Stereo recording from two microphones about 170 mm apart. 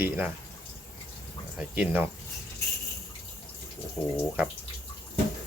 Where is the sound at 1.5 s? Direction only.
5° right (ahead or behind).